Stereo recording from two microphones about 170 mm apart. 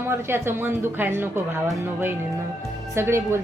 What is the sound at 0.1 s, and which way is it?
A woman's voice, 15° right (ahead or behind).